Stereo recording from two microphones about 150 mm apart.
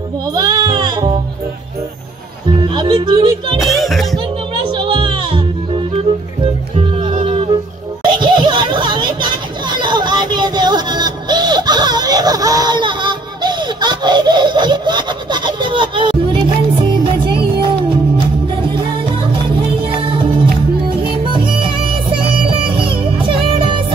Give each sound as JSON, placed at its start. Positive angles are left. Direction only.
{"t": 0.3, "sound": "music", "side_deg": -25}
{"t": 2.6, "sound": "speech", "side_deg": -30}
{"t": 3.5, "sound": "music", "side_deg": 0}
{"t": 4.6, "sound": "music", "side_deg": -35}
{"t": 6.4, "sound": "music", "side_deg": -40}
{"t": 8.0, "sound": "a sound", "side_deg": -30}
{"t": 19.9, "sound": "music", "side_deg": -35}
{"t": 21.3, "sound": "music", "side_deg": -35}